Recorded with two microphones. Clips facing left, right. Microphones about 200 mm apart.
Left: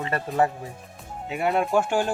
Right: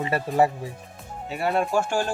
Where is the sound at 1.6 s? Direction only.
20° left (ahead or behind).